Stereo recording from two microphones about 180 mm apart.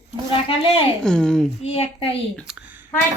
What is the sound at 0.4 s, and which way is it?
Speech, 30° left (ahead or behind).